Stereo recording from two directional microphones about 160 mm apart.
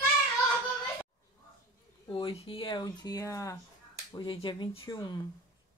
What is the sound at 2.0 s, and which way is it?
Speech, 35° left (ahead or behind).